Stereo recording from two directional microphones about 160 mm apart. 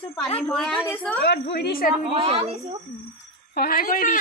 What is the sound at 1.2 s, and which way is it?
Speech, 90° left.